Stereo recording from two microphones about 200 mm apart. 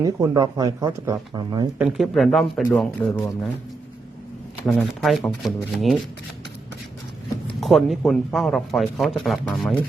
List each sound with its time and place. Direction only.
0.0 s speech: 20° right (ahead or behind)
1.8 s speech: centre (ahead or behind)
4.6 s speech: centre (ahead or behind)
7.6 s speech: centre (ahead or behind)